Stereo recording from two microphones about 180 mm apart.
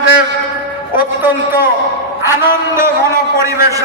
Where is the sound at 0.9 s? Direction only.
10° right (ahead or behind).